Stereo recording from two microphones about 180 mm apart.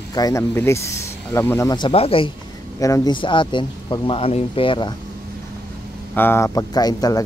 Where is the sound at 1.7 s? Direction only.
30° left (ahead or behind).